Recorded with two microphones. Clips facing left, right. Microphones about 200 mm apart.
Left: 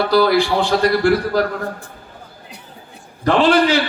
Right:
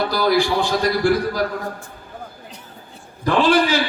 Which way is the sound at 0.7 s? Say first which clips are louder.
Left 6 dB; 60° left (ahead or behind).